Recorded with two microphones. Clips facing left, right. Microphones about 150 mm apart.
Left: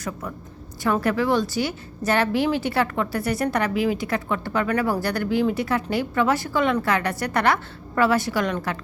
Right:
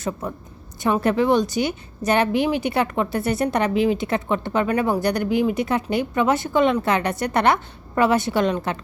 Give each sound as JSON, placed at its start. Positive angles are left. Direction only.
{"t": 0.0, "sound": "a woman's voice", "side_deg": -25}